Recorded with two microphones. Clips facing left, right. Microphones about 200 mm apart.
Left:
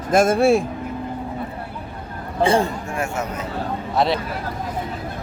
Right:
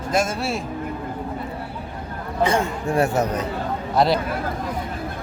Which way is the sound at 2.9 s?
35° right (ahead or behind).